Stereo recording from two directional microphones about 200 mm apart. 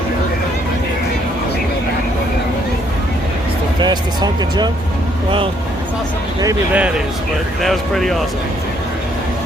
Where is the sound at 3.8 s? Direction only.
20° right (ahead or behind).